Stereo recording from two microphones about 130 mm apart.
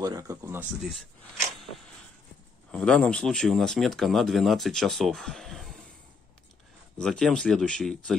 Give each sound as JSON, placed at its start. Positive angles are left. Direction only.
{"t": 0.0, "sound": "speech", "side_deg": -25}
{"t": 2.7, "sound": "speech", "side_deg": 5}
{"t": 7.0, "sound": "speech", "side_deg": 5}